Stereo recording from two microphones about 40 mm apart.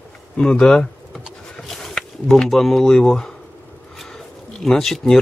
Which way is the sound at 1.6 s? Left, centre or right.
Centre.